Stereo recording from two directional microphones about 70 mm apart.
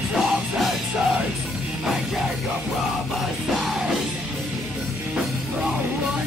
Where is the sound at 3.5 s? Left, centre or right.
Centre.